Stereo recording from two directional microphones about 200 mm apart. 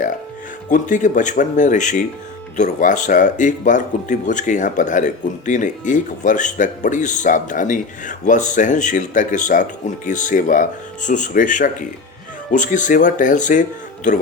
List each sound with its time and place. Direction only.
0.7 s speech: 40° left (ahead or behind)